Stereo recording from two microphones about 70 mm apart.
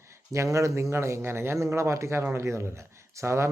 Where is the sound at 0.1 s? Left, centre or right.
Right.